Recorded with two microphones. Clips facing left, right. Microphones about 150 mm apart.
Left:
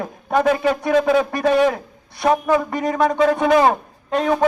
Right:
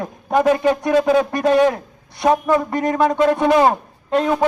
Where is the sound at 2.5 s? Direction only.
10° left (ahead or behind).